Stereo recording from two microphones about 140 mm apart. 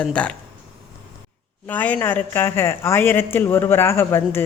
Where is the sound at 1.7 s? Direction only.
10° left (ahead or behind).